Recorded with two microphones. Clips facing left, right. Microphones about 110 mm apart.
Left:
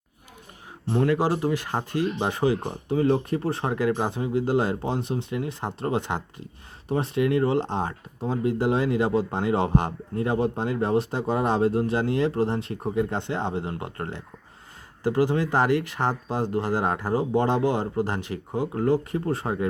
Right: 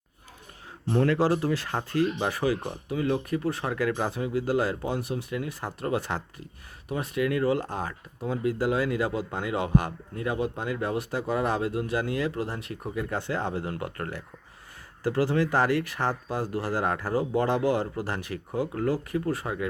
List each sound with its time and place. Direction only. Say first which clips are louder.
0.9 s speech: left 1 dB; 15° left (ahead or behind)